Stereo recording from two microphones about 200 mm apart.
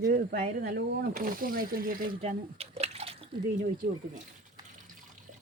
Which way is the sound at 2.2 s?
30° right (ahead or behind).